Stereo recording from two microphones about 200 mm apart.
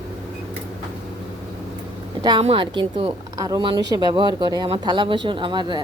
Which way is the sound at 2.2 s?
25° right (ahead or behind).